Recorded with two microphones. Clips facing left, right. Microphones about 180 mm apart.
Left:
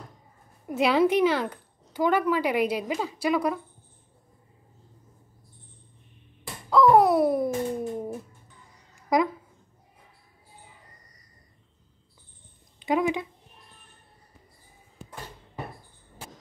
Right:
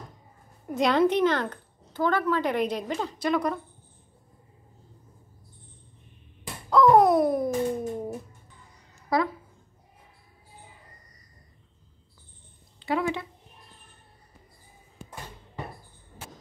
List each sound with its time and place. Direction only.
0.7 s speech: 5° left (ahead or behind)
6.4 s a sound: centre (ahead or behind)
9.1 s speech: 15° left (ahead or behind)
12.7 s a woman's voice: 15° left (ahead or behind)